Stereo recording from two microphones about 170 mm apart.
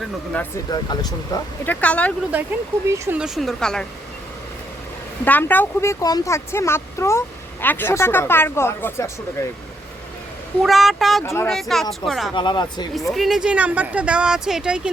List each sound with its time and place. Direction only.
0.7 s speech: 25° left (ahead or behind)
1.6 s speech: 10° left (ahead or behind)
2.9 s speech: 15° right (ahead or behind)
3.2 s speech: centre (ahead or behind)
5.2 s speech: 10° left (ahead or behind)
10.6 s speech: centre (ahead or behind)
12.3 s speech: 25° left (ahead or behind)
13.1 s speech: centre (ahead or behind)